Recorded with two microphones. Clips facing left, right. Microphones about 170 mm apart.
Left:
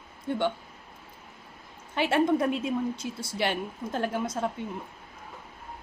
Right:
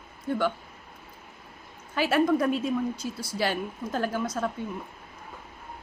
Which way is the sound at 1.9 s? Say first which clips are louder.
Right 1 dB; 25° left (ahead or behind).